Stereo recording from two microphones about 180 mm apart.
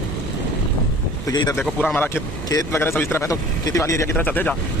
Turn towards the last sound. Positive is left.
turn(degrees=10)  # may be behind; listen again after turning